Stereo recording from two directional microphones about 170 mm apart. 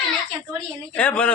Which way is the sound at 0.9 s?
5° left (ahead or behind).